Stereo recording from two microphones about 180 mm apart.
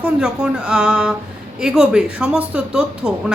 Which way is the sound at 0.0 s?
5° right (ahead or behind).